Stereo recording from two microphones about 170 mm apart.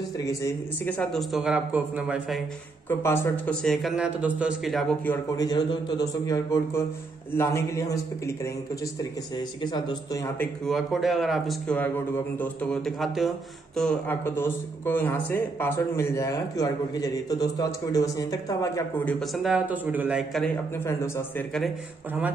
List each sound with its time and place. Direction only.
0.2 s a man's voice: 20° left (ahead or behind)
0.8 s a man's voice: 5° left (ahead or behind)
2.9 s speech: 15° left (ahead or behind)
3.6 s a man's voice: centre (ahead or behind)
5.4 s a man's voice: 25° left (ahead or behind)
9.6 s a man's voice: 25° left (ahead or behind)
10.7 s a man's voice: centre (ahead or behind); by 18.9 s 20° left (ahead or behind)
19.0 s a man's voice: centre (ahead or behind)